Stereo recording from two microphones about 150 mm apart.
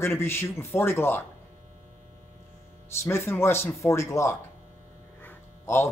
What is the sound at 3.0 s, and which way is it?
Speech, 15° left (ahead or behind).